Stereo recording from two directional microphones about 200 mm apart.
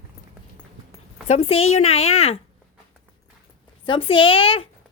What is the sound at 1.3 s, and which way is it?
Speech, 30° left (ahead or behind).